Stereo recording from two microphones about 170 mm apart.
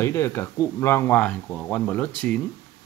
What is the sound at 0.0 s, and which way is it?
Speech, 15° left (ahead or behind).